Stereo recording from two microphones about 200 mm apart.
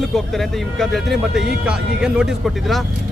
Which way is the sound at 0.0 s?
Centre (ahead or behind).